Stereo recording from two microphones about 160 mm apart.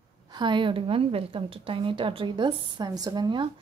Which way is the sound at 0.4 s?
30° right (ahead or behind).